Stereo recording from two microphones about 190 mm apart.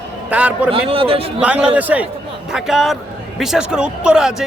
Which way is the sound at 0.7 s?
30° right (ahead or behind).